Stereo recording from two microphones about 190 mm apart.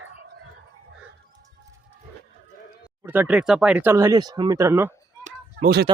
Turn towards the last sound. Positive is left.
turn(degrees=-50)  # may be behind; listen again after turning